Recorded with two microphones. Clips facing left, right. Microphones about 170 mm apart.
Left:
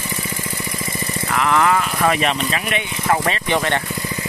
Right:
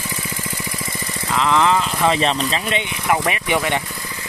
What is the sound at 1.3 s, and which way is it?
Speech, 20° right (ahead or behind).